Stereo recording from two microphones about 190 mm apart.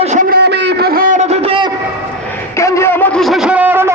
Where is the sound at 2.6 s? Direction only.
15° left (ahead or behind); by 3.9 s 10° right (ahead or behind).